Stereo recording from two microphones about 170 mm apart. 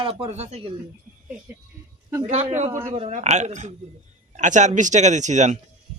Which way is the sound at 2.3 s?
45° right (ahead or behind).